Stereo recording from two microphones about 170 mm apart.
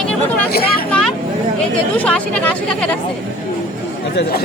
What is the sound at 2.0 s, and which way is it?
Speech, 5° left (ahead or behind).